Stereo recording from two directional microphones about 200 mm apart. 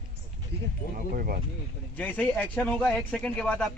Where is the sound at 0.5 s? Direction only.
55° right (ahead or behind).